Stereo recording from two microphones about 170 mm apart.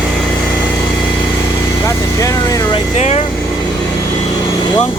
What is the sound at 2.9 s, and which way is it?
Speech, 40° left (ahead or behind).